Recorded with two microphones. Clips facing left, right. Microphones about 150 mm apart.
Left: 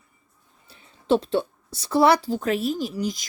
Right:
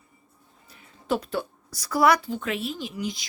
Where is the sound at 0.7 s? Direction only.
30° left (ahead or behind).